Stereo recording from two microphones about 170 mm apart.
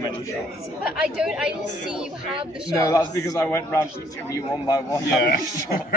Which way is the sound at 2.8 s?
20° left (ahead or behind).